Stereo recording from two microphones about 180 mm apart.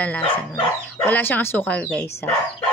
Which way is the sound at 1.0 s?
10° left (ahead or behind).